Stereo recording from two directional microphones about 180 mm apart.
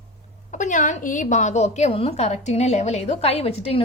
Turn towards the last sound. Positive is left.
turn(degrees=35)  # may be behind; listen again after turning